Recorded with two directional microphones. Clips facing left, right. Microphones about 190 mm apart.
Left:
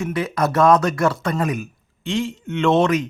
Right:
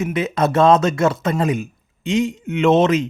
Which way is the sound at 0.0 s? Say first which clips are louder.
Right 2 dB; 20° right (ahead or behind).